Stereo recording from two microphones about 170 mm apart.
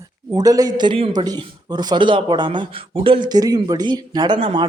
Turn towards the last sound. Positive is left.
turn(degrees=-30)  # may be behind; listen again after turning